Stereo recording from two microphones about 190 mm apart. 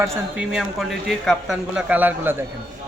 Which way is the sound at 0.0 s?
15° right (ahead or behind).